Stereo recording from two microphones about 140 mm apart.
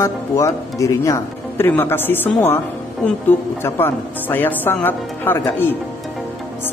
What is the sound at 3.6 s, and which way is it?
Speech, 15° left (ahead or behind).